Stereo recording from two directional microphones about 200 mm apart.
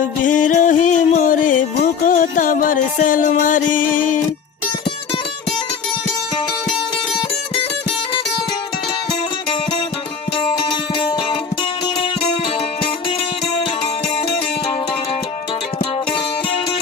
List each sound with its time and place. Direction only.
0.0 s music: 40° left (ahead or behind)
10.3 s music: 25° left (ahead or behind)